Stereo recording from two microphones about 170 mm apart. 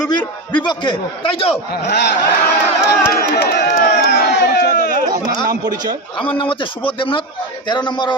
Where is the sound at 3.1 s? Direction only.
65° left (ahead or behind).